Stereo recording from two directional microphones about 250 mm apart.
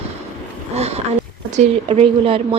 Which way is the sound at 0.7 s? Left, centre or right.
Right.